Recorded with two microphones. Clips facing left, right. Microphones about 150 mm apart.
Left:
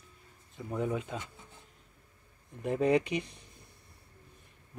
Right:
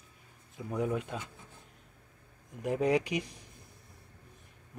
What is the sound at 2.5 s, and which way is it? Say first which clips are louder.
Speech: left 1 dB; centre (ahead or behind).